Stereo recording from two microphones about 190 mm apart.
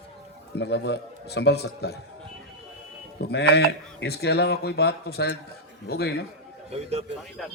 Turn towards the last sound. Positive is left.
turn(degrees=0)  # may be behind; listen again after turning